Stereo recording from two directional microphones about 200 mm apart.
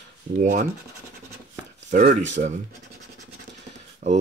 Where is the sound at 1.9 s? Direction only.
40° right (ahead or behind).